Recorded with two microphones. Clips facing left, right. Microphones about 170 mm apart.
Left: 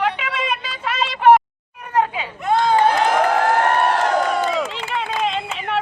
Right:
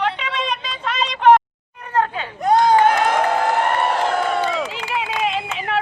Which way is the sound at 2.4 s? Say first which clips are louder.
Right 3 dB; 40° right (ahead or behind).